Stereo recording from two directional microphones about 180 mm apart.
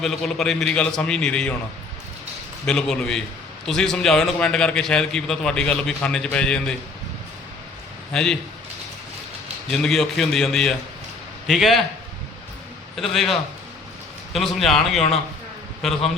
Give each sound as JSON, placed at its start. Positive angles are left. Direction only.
{"t": 0.0, "sound": "a man's voice", "side_deg": 5}
{"t": 2.6, "sound": "a man's voice", "side_deg": 5}
{"t": 8.1, "sound": "a man's voice", "side_deg": 5}
{"t": 9.6, "sound": "a man's voice", "side_deg": 5}
{"t": 13.0, "sound": "a man's voice", "side_deg": 0}
{"t": 14.3, "sound": "a man's voice", "side_deg": 0}